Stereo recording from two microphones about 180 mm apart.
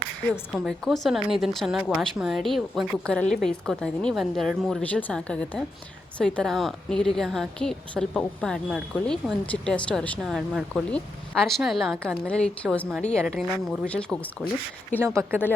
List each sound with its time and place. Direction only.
0.5 s a woman's voice: centre (ahead or behind)
15.0 s speech: 15° right (ahead or behind)